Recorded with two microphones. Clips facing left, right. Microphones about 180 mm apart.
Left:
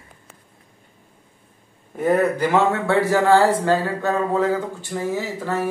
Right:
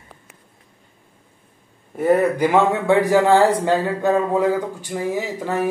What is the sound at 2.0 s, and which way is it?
Speech, 10° right (ahead or behind).